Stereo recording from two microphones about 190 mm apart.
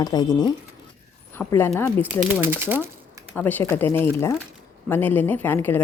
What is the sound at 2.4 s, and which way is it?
Sewing machine, 10° right (ahead or behind).